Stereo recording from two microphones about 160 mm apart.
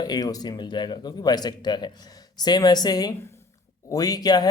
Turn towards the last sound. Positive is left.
turn(degrees=25)  # may be behind; listen again after turning